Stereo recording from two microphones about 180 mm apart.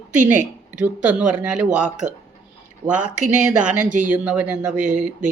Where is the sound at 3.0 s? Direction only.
45° right (ahead or behind).